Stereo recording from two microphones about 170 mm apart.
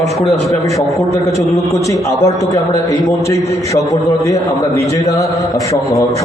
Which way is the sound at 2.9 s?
20° left (ahead or behind).